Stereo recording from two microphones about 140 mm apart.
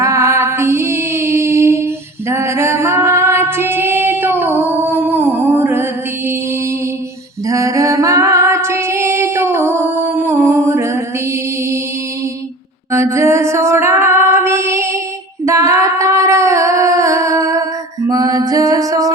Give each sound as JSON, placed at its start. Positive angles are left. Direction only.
{"t": 0.0, "sound": "music", "side_deg": -20}
{"t": 2.3, "sound": "female singing", "side_deg": -20}
{"t": 7.4, "sound": "female singing", "side_deg": -20}
{"t": 12.9, "sound": "female singing", "side_deg": -20}
{"t": 15.4, "sound": "humming", "side_deg": -20}
{"t": 18.1, "sound": "music", "side_deg": -25}